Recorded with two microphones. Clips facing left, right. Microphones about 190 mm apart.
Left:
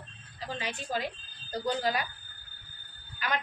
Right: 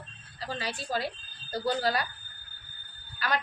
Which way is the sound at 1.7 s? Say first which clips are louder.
Right 2 dB; 35° right (ahead or behind).